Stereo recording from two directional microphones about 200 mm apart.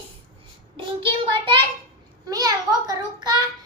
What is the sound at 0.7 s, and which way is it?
Child singing, 25° right (ahead or behind).